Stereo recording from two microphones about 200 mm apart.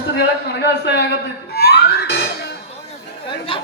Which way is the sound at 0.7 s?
55° left (ahead or behind).